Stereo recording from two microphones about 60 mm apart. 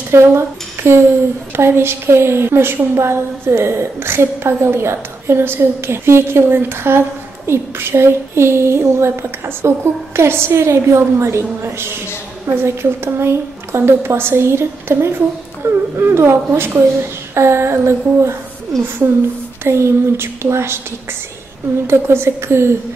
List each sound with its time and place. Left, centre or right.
0.1 s speech: right
0.8 s a sound: right
1.6 s a woman's voice: right
18.7 s a woman's voice: centre
19.6 s a woman's voice: right
21.8 s a woman's voice: right